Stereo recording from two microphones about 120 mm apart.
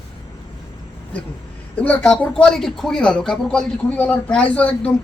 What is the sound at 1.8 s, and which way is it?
Speech, 10° left (ahead or behind).